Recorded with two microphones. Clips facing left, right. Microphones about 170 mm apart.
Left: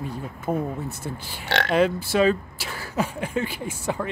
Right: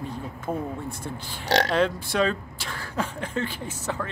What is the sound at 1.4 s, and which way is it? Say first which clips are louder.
Speech: right 3 dB; 40° right (ahead or behind).